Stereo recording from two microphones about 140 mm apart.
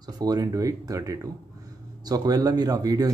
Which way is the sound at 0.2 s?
25° right (ahead or behind).